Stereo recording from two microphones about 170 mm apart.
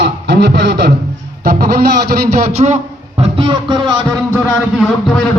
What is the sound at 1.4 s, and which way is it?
Speech, 60° right (ahead or behind).